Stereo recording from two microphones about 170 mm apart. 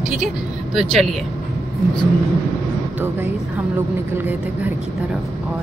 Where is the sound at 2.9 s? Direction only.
10° right (ahead or behind).